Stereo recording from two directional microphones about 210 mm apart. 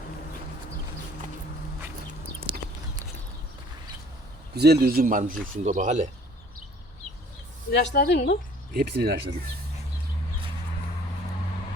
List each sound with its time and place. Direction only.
4.5 s a man's voice: 50° right (ahead or behind)
7.7 s speech: 55° left (ahead or behind)
8.7 s a man's voice: 50° right (ahead or behind)